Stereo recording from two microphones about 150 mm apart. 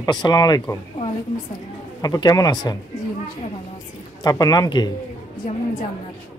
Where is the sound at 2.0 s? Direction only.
25° left (ahead or behind).